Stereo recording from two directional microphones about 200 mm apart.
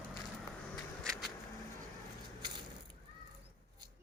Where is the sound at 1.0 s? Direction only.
Centre (ahead or behind).